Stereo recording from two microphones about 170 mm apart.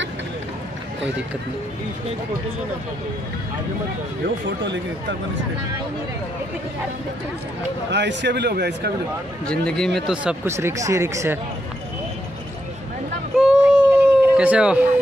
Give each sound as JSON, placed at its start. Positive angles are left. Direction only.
{"t": 7.9, "sound": "a man's voice", "side_deg": -90}
{"t": 9.5, "sound": "speech", "side_deg": 5}
{"t": 13.4, "sound": "a sound", "side_deg": -5}